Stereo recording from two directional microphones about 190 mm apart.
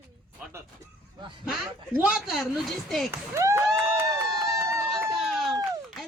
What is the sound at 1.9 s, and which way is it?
A woman's voice, 5° right (ahead or behind).